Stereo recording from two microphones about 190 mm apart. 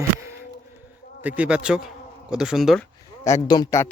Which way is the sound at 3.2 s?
20° left (ahead or behind).